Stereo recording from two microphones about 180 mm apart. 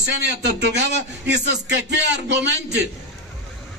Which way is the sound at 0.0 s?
70° right (ahead or behind).